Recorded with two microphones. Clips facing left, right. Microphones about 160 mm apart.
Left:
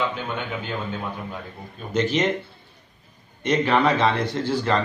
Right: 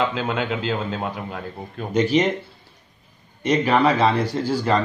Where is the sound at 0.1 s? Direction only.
90° right.